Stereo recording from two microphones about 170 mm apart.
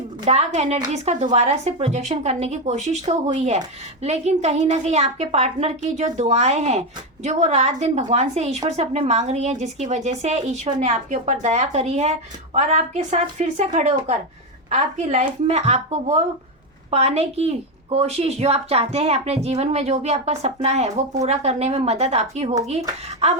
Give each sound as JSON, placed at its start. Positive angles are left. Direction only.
{"t": 0.3, "sound": "a woman's voice", "side_deg": -40}
{"t": 14.7, "sound": "a woman's voice", "side_deg": -40}